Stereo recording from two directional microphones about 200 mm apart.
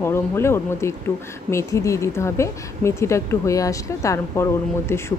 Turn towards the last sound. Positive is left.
turn(degrees=15)  # may be behind; listen again after turning